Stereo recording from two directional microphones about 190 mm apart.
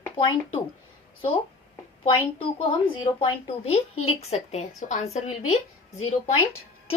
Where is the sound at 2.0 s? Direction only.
25° left (ahead or behind).